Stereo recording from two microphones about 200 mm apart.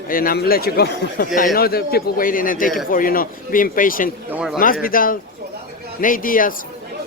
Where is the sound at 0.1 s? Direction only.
45° left (ahead or behind).